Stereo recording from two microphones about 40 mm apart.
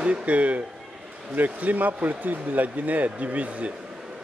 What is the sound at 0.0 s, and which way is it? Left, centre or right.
Speech, right.